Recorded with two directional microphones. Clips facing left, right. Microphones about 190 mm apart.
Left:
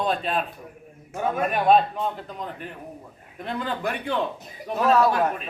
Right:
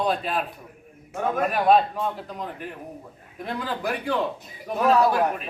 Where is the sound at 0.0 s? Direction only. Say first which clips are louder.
Even; 5° right (ahead or behind).